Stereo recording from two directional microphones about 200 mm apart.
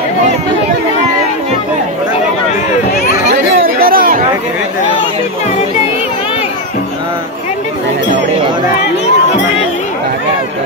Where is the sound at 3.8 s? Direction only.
45° right (ahead or behind).